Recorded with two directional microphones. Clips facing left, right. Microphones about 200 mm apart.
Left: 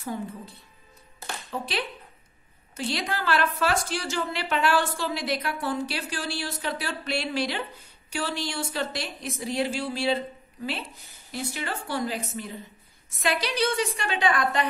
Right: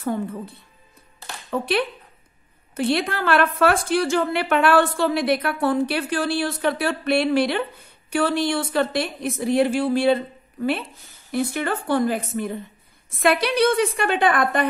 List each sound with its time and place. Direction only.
0.0 s a woman's voice: 55° right (ahead or behind)
1.5 s a woman's voice: 55° right (ahead or behind)